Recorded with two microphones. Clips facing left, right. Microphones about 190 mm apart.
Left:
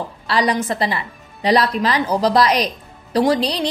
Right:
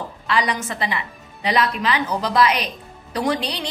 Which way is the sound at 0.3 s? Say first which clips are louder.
Left 4 dB; 35° left (ahead or behind).